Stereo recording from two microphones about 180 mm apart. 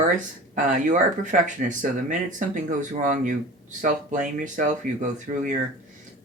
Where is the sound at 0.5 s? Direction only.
45° right (ahead or behind).